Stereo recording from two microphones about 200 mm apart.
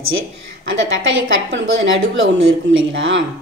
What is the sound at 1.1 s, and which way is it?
Speech, 75° right (ahead or behind).